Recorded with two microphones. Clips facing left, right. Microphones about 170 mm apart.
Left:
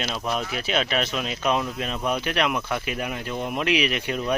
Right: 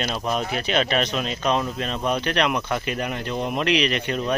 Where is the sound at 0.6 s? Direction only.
5° left (ahead or behind).